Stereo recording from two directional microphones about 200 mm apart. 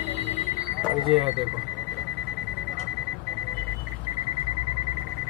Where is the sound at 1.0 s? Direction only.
Centre (ahead or behind).